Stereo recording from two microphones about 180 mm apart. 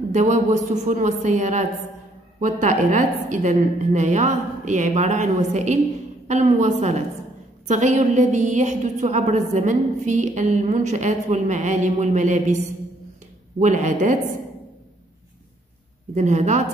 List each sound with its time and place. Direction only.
0.1 s a woman's voice: 40° right (ahead or behind)
13.6 s a woman's voice: 45° right (ahead or behind)
16.2 s a woman's voice: 40° right (ahead or behind)